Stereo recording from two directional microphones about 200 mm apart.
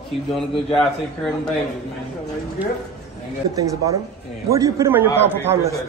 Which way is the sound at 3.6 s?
15° right (ahead or behind).